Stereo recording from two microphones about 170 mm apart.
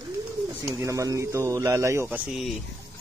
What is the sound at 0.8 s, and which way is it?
Speech, 20° right (ahead or behind).